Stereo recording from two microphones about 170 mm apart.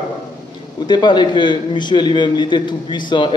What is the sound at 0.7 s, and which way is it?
A man's voice, 25° left (ahead or behind).